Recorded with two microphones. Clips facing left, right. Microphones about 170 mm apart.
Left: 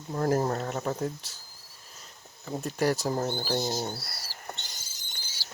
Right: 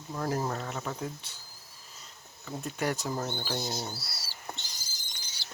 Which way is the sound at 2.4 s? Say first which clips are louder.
Left 5 dB; 35° left (ahead or behind).